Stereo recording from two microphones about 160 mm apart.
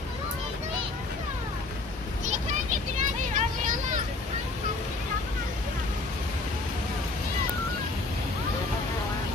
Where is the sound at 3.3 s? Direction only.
55° right (ahead or behind).